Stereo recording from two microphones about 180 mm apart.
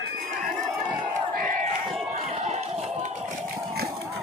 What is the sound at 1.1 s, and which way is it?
Crowd, 50° right (ahead or behind).